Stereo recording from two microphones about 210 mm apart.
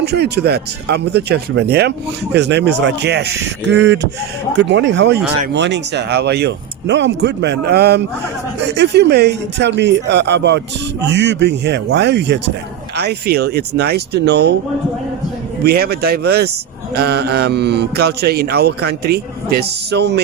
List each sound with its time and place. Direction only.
0.0 s speech: 50° right (ahead or behind)
15.6 s speech: 50° right (ahead or behind)